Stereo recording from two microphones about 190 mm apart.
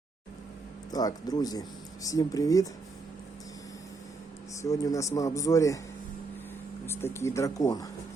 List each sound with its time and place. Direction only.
0.9 s speech: 20° left (ahead or behind)
4.6 s speech: 15° left (ahead or behind)
6.8 s speech: 15° left (ahead or behind)